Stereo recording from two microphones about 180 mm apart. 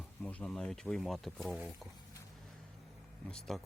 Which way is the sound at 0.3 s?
5° left (ahead or behind).